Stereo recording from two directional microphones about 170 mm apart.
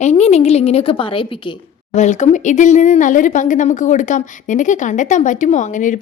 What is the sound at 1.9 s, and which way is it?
Speech, 45° left (ahead or behind).